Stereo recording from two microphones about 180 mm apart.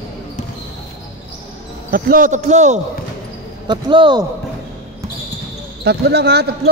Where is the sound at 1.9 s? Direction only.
50° right (ahead or behind).